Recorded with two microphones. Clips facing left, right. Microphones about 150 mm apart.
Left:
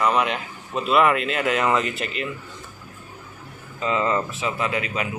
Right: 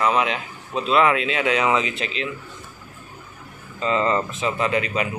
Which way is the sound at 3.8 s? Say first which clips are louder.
Right 2 dB; 10° left (ahead or behind).